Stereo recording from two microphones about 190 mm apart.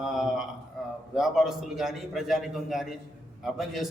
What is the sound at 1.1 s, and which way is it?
A man's voice, centre (ahead or behind).